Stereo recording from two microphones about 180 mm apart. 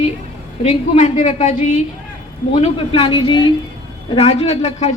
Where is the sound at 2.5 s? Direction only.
35° left (ahead or behind).